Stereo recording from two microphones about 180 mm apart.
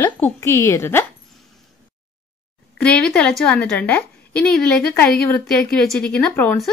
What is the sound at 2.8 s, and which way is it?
A woman's voice, 5° left (ahead or behind).